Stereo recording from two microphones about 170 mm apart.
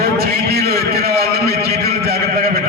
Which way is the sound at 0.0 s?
65° right (ahead or behind).